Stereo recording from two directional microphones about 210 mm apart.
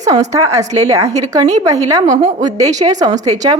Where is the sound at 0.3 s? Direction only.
15° right (ahead or behind).